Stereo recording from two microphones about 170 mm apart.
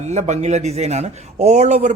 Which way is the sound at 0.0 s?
40° right (ahead or behind).